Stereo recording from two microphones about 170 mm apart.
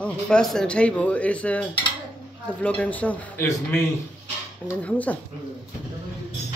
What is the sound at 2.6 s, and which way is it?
Speech, 10° left (ahead or behind).